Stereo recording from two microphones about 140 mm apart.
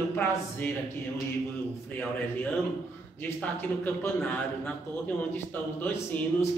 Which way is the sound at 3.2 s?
10° left (ahead or behind).